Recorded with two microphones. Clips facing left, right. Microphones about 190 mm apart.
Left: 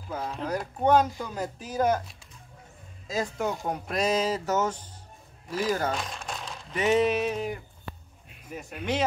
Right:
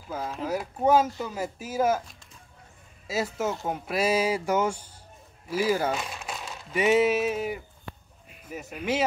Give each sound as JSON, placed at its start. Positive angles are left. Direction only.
{"t": 0.1, "sound": "speech", "side_deg": 0}